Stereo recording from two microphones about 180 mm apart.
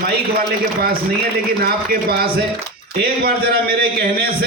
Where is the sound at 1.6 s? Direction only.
60° right (ahead or behind).